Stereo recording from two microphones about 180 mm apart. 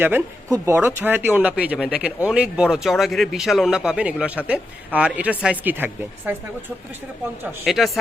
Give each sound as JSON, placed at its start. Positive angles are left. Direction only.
{"t": 0.0, "sound": "speech", "side_deg": -15}
{"t": 7.6, "sound": "speech", "side_deg": 0}